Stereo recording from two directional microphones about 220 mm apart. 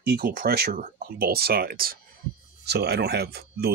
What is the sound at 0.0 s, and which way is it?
Speech, 45° right (ahead or behind).